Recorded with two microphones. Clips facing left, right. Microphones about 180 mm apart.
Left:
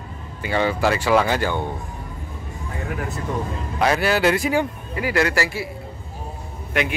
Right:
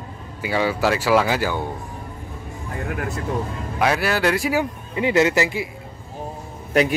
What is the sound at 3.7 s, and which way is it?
Speech, centre (ahead or behind).